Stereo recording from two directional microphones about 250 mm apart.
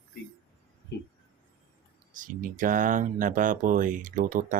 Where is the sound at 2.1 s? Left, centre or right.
Right.